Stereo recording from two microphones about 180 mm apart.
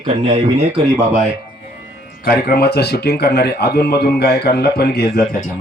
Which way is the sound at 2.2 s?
55° left (ahead or behind).